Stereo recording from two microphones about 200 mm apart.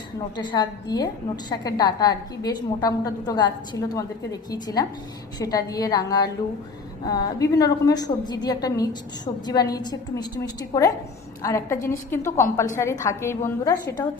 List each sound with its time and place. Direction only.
0.3 s a woman's voice: 20° left (ahead or behind)